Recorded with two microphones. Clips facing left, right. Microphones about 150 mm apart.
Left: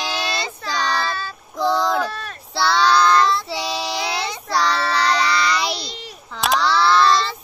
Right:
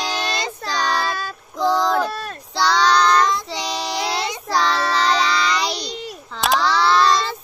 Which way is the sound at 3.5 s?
5° left (ahead or behind).